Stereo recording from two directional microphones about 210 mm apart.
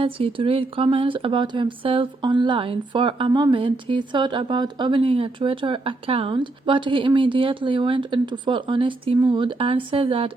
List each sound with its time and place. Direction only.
0.0 s speech: 25° right (ahead or behind)